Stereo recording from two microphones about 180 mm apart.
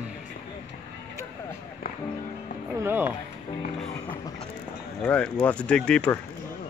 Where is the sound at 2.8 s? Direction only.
10° right (ahead or behind).